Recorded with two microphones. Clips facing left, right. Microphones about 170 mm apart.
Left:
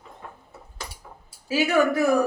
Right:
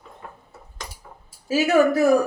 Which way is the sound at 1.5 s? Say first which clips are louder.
Right 3 dB; 40° right (ahead or behind).